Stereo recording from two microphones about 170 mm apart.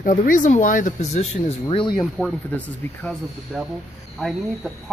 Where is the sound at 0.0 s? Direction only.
50° left (ahead or behind); by 2.0 s 30° left (ahead or behind).